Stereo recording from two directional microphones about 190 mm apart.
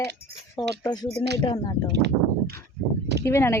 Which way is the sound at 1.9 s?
60° right (ahead or behind).